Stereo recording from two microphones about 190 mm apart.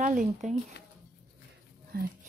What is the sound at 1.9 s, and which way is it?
Female singing, 50° right (ahead or behind).